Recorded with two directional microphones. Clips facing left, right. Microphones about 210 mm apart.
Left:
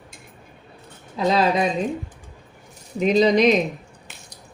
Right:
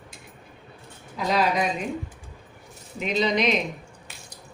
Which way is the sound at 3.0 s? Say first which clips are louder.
Left 8 dB; 40° left (ahead or behind).